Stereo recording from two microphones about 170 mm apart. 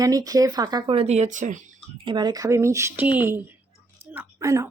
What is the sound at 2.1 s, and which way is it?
Speech, 25° right (ahead or behind).